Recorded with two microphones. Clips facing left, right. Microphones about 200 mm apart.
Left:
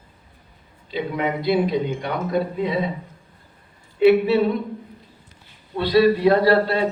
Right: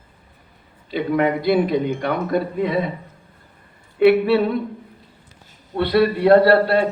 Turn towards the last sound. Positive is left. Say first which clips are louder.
# right 3 dB
turn(degrees=-60)  # may be behind; listen again after turning